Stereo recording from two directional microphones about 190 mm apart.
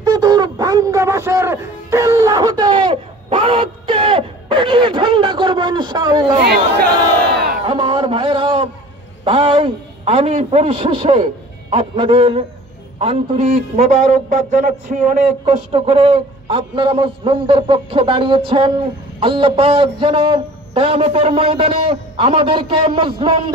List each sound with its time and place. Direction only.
0.0 s a man's voice: 20° right (ahead or behind)
6.4 s a man's voice: 55° right (ahead or behind)
7.6 s a sound: 25° right (ahead or behind)
9.2 s a man's voice: 25° right (ahead or behind)
14.3 s a man's voice: 40° right (ahead or behind)
15.7 s a man's voice: 30° right (ahead or behind)